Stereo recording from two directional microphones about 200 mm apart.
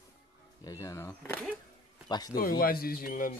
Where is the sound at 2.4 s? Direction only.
45° left (ahead or behind).